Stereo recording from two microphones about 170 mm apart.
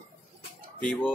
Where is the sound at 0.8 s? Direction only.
5° left (ahead or behind).